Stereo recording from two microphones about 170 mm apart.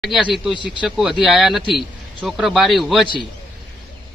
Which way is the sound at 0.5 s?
30° left (ahead or behind).